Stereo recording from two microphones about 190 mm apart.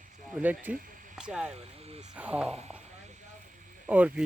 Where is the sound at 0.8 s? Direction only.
45° right (ahead or behind).